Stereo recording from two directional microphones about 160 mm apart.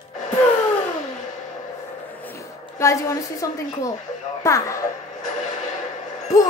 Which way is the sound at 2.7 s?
20° left (ahead or behind).